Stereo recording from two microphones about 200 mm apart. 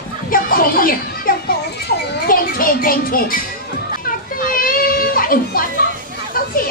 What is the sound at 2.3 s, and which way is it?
A child's voice, 45° left (ahead or behind).